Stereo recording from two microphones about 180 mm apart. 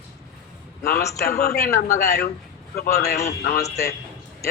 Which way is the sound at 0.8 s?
60° left (ahead or behind).